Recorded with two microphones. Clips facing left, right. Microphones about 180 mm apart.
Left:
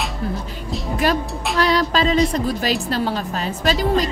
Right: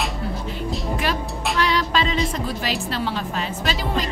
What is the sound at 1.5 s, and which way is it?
A woman's voice, 40° left (ahead or behind).